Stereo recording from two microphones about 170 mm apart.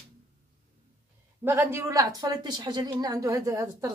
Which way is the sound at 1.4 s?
15° right (ahead or behind).